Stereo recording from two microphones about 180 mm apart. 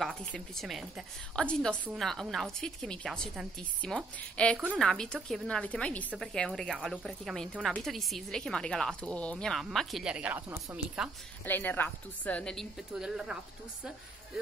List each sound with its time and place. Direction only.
0.0 s a woman's voice: 5° left (ahead or behind)
11.4 s a woman's voice: 10° left (ahead or behind)